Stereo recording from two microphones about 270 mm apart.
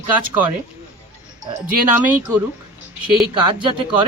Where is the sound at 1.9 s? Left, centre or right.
Centre.